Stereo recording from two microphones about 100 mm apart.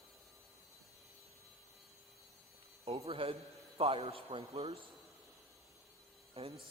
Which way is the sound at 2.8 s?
80° right.